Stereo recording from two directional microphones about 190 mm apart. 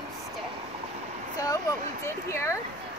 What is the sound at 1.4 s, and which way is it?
Speech, 15° left (ahead or behind).